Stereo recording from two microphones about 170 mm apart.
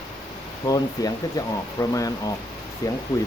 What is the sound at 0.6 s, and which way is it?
Speech, 20° left (ahead or behind).